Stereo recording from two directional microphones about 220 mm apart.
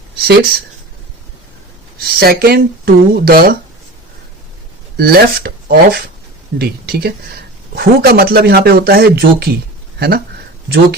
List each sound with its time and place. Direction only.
0.2 s speech: 45° right (ahead or behind)
2.0 s speech: 45° right (ahead or behind)
4.9 s speech: 45° right (ahead or behind)